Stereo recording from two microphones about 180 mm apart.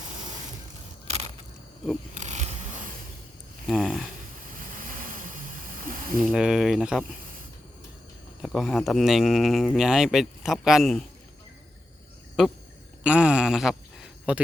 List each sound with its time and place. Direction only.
1.0 s a sound: 35° right (ahead or behind)
3.7 s speech: centre (ahead or behind)
4.8 s vehicle: 50° right (ahead or behind)
6.1 s speech: centre (ahead or behind)
8.4 s speech: centre (ahead or behind)
12.4 s speech: 5° right (ahead or behind)
13.0 s a sound: 5° right (ahead or behind)